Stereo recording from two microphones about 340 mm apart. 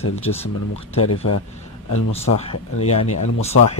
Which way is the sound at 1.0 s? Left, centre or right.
Left.